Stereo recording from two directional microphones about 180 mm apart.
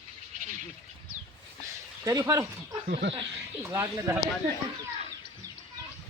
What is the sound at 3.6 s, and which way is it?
Speech, 15° right (ahead or behind).